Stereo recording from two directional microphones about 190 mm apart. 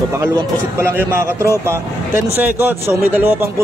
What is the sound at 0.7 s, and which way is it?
A man's voice, 15° right (ahead or behind).